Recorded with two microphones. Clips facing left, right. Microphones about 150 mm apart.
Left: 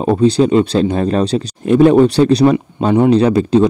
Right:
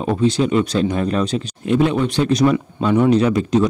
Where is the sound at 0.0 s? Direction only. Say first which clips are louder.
Left 6 dB; 35° left (ahead or behind).